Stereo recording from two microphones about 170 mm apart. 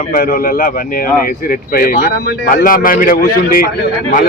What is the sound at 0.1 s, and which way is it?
A man's voice, 55° left (ahead or behind).